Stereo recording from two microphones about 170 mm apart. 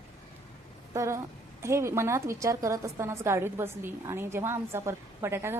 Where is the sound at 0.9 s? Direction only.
20° right (ahead or behind).